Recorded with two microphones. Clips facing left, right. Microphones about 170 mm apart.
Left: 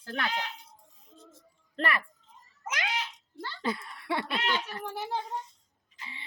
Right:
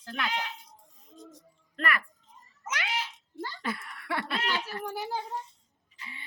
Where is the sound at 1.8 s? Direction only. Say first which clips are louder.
Left 1 dB; 30° left (ahead or behind).